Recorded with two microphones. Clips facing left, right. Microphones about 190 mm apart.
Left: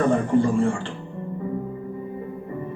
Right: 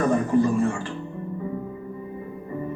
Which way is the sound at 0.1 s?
30° left (ahead or behind).